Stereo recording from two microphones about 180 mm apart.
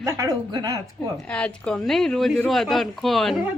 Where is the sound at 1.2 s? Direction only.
5° left (ahead or behind).